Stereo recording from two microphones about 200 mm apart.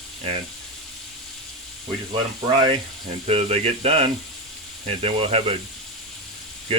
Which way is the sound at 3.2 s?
30° right (ahead or behind).